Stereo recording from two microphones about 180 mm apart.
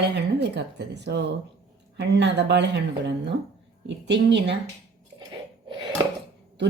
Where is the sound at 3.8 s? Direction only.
75° right (ahead or behind).